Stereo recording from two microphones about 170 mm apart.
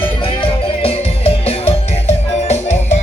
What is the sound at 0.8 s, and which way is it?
Music, 35° left (ahead or behind).